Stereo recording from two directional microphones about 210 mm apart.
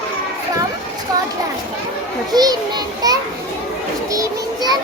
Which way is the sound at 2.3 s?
20° right (ahead or behind).